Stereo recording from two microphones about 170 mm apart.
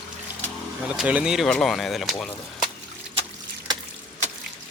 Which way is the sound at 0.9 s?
5° right (ahead or behind).